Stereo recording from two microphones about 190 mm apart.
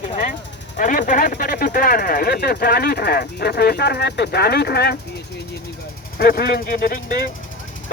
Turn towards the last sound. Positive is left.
turn(degrees=50)  # may be behind; listen again after turning